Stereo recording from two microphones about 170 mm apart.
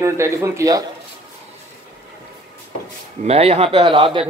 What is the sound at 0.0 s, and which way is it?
Speech, 15° right (ahead or behind).